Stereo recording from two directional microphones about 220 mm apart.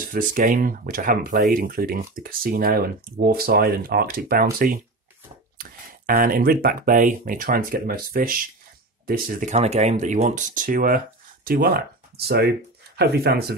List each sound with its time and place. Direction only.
0.0 s speech: 40° right (ahead or behind)